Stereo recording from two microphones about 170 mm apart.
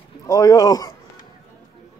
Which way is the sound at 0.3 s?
20° left (ahead or behind).